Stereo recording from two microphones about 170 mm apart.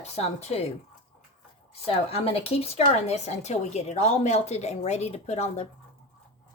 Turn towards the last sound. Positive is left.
turn(degrees=40)  # may be behind; listen again after turning